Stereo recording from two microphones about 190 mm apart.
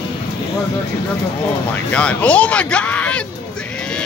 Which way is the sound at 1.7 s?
5° left (ahead or behind).